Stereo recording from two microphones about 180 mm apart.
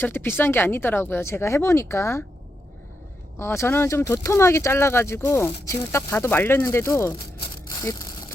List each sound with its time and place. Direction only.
0.0 s speech: 10° left (ahead or behind)
3.3 s speech: 15° left (ahead or behind)
7.8 s a sound: 20° left (ahead or behind)